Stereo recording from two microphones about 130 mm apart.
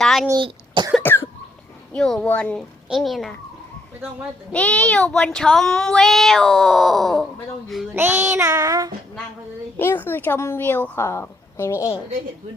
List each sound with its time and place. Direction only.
0.0 s cough: centre (ahead or behind)
0.3 s speech: 40° right (ahead or behind)
1.0 s cough: 15° left (ahead or behind)
1.9 s speech: 5° left (ahead or behind)
2.6 s a child's voice: centre (ahead or behind)
4.5 s speech: 10° left (ahead or behind)
7.9 s child singing: 15° right (ahead or behind)
9.7 s a woman's voice: 15° left (ahead or behind)